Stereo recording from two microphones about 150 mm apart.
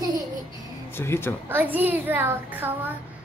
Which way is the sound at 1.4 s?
15° right (ahead or behind).